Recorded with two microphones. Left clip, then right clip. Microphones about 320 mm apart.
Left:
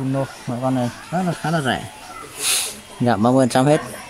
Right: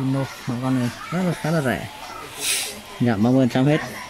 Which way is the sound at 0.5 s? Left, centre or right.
Centre.